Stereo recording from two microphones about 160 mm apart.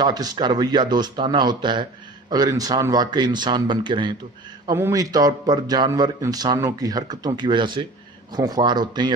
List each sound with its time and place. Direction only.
0.0 s speech: 25° right (ahead or behind)
4.7 s speech: 15° right (ahead or behind)